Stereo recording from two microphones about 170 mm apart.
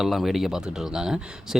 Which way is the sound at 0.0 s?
Centre (ahead or behind).